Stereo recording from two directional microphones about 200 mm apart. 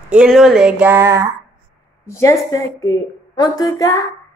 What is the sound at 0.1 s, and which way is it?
Speech, 5° right (ahead or behind).